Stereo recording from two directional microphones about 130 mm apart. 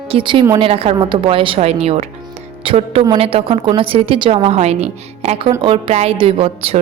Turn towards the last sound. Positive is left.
turn(degrees=-50)  # may be behind; listen again after turning